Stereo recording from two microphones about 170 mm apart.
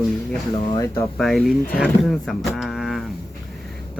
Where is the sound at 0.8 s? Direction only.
15° left (ahead or behind).